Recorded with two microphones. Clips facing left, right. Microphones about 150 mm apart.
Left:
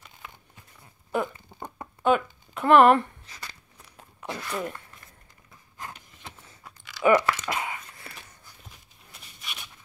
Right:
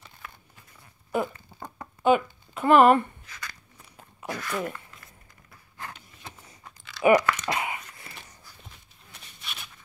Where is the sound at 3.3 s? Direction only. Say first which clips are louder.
Right 1 dB; 30° left (ahead or behind).